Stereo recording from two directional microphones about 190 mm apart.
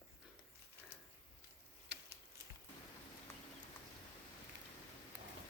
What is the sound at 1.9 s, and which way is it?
Typing, 65° right (ahead or behind).